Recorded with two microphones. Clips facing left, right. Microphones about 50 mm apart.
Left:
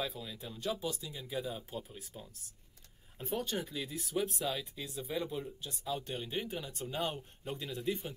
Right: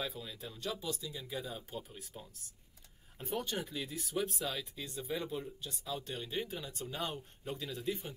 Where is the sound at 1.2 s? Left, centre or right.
Centre.